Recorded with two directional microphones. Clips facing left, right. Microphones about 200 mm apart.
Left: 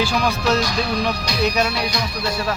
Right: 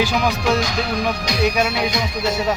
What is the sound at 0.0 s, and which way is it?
Speech, 15° right (ahead or behind).